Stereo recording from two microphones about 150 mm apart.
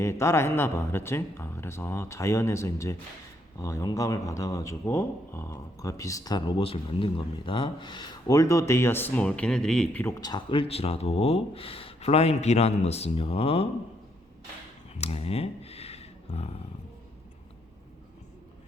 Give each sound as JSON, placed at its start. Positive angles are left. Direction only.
{"t": 0.0, "sound": "speech", "side_deg": 20}
{"t": 10.2, "sound": "speech", "side_deg": 25}
{"t": 14.9, "sound": "a sound", "side_deg": 40}